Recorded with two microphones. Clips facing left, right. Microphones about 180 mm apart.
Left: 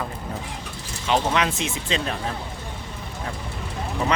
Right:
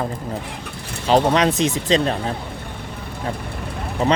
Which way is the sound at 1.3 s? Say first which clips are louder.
Right 6 dB; 35° right (ahead or behind).